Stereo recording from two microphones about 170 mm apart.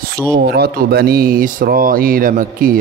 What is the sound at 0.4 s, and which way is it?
A man's voice, 70° right (ahead or behind).